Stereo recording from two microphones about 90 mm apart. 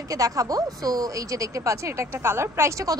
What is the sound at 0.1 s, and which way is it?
A woman's voice, 40° right (ahead or behind).